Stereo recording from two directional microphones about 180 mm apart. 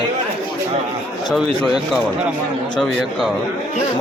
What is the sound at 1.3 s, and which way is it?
Speech, centre (ahead or behind).